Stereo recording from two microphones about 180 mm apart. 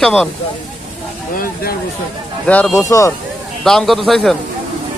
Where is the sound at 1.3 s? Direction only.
55° left (ahead or behind).